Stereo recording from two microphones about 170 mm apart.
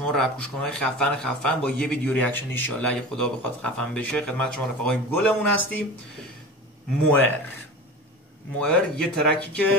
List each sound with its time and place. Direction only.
0.0 s speech: 5° left (ahead or behind)
8.5 s speech: 5° left (ahead or behind)